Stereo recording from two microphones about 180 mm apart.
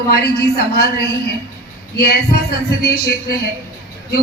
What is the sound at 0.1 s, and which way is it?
Speech, 60° left (ahead or behind).